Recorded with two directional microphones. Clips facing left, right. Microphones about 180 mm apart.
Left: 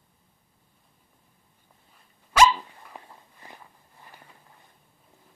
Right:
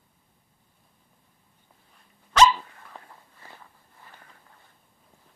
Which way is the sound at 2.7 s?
15° left (ahead or behind).